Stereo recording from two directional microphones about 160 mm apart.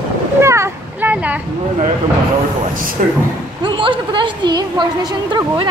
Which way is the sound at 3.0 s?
60° right (ahead or behind).